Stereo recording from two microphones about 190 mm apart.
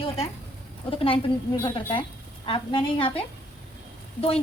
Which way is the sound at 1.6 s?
25° left (ahead or behind).